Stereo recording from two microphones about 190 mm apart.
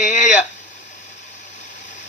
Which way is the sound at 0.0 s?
40° left (ahead or behind).